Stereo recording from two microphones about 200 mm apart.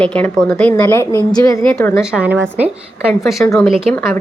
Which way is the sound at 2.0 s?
5° right (ahead or behind).